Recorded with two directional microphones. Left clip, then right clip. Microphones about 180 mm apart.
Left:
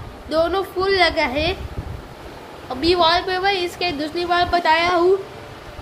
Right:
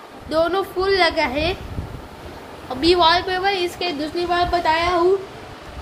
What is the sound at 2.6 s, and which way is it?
A woman's voice, centre (ahead or behind).